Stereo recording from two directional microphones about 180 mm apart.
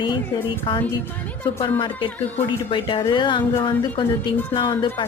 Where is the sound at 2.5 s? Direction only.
25° left (ahead or behind).